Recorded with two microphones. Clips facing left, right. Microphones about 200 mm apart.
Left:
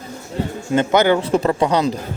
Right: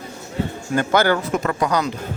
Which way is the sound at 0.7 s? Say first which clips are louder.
Left 3 dB; 20° left (ahead or behind).